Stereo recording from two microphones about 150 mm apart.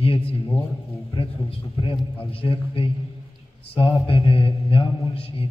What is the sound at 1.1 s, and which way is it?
A man's voice, 35° left (ahead or behind).